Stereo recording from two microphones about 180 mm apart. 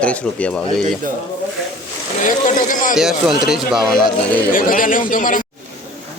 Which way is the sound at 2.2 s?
45° left (ahead or behind).